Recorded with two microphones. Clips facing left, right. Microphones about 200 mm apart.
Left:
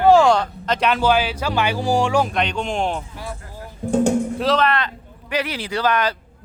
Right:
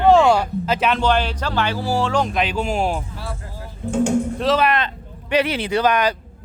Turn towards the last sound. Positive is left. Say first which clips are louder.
# right 3 dB
turn(degrees=-15)  # may be behind; listen again after turning